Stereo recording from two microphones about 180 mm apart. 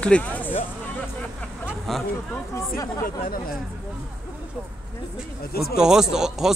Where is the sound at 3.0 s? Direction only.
50° left (ahead or behind).